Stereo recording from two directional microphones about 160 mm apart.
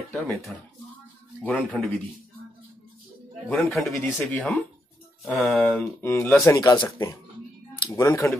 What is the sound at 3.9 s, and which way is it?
Speech, 15° left (ahead or behind).